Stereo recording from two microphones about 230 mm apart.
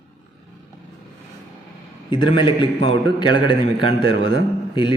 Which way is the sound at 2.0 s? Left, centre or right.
Left.